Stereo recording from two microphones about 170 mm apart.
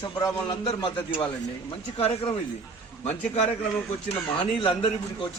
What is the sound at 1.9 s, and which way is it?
Speech, 35° left (ahead or behind).